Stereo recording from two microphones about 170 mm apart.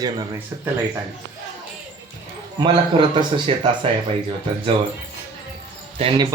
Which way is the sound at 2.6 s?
30° right (ahead or behind).